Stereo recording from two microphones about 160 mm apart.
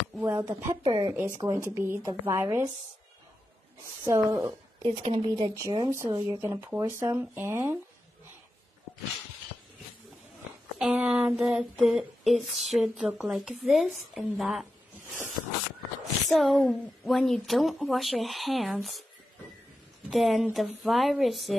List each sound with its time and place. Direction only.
0.2 s a sound: 20° right (ahead or behind)
0.8 s speech: 30° right (ahead or behind)
1.4 s speech: 20° right (ahead or behind)
4.0 s speech: 20° right (ahead or behind)
4.5 s speech: 35° right (ahead or behind)
5.6 s speech: 25° right (ahead or behind)
10.8 s a woman's voice: 5° right (ahead or behind)
16.3 s a woman's voice: centre (ahead or behind)
20.1 s a woman's voice: centre (ahead or behind)